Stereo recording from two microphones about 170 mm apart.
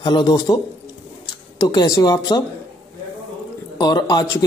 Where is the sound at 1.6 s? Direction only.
20° left (ahead or behind).